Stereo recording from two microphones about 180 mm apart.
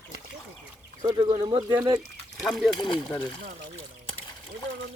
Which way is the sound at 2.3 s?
Centre (ahead or behind).